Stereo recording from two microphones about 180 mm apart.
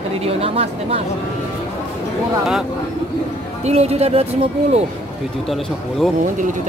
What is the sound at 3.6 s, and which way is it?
Speech, 35° right (ahead or behind).